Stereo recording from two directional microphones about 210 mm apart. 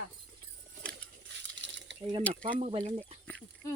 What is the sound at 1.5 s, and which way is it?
Crumpling, 55° right (ahead or behind).